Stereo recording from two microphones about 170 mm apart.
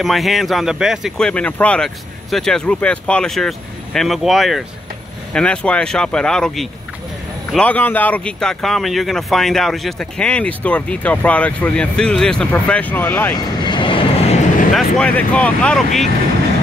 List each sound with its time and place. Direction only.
0.0 s speech: centre (ahead or behind)
13.7 s vehicle: 30° left (ahead or behind)
14.7 s speech: 5° left (ahead or behind)